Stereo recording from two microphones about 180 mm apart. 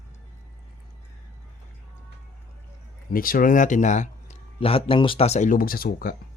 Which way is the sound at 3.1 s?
50° left (ahead or behind).